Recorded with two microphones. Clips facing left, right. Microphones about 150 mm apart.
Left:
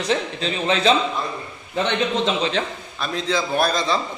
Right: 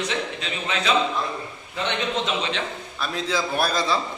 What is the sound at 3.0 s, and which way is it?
Speech, 5° right (ahead or behind).